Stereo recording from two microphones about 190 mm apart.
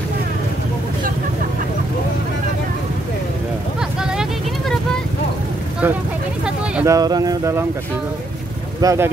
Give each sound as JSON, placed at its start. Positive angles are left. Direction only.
{"t": 4.0, "sound": "vehicle", "side_deg": -5}
{"t": 6.4, "sound": "vehicle", "side_deg": -10}
{"t": 7.0, "sound": "speech", "side_deg": -20}
{"t": 8.8, "sound": "speech", "side_deg": -15}